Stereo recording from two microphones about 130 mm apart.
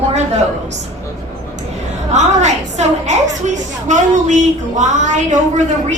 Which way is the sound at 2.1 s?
60° right (ahead or behind).